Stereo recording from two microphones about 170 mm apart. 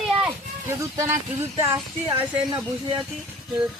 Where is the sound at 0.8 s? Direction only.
15° right (ahead or behind).